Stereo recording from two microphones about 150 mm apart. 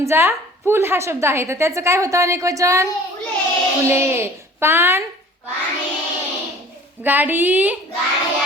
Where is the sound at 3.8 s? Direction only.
15° right (ahead or behind).